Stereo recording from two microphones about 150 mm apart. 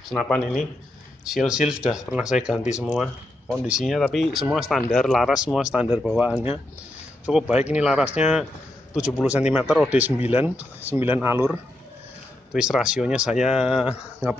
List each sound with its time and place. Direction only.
0.1 s speech: centre (ahead or behind)
3.6 s speech: 5° right (ahead or behind)
12.5 s speech: 5° right (ahead or behind)